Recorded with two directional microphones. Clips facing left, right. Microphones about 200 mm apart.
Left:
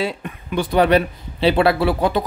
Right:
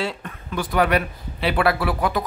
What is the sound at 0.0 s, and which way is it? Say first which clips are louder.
Speech: left 4 dB; 15° left (ahead or behind).